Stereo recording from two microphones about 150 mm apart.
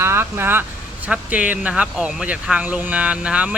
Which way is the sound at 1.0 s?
10° right (ahead or behind).